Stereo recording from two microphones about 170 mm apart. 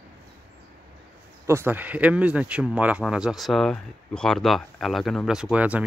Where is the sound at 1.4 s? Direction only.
15° right (ahead or behind).